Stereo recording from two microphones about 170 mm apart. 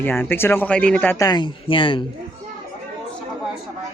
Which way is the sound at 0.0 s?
10° left (ahead or behind).